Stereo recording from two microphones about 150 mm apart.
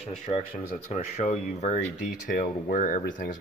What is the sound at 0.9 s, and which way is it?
Speech, 50° left (ahead or behind).